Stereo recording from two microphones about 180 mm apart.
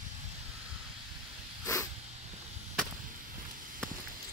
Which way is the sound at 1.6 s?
15° left (ahead or behind).